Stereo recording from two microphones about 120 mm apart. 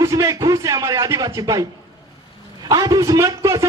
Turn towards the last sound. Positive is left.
turn(degrees=-25)  # may be behind; listen again after turning